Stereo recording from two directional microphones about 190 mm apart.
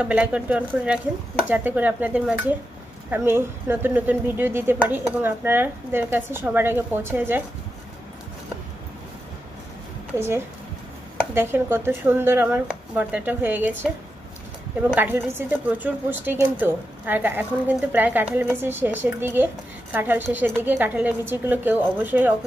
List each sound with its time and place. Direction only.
0.0 s a woman's voice: 5° right (ahead or behind)
10.1 s a woman's voice: 15° right (ahead or behind)
15.0 s a woman's voice: 10° right (ahead or behind)